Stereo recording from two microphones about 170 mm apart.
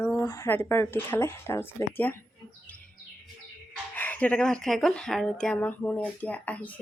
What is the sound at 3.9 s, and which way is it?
Speech, 10° left (ahead or behind).